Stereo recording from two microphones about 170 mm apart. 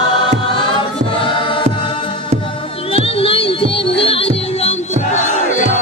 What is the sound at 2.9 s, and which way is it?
Music, 35° left (ahead or behind).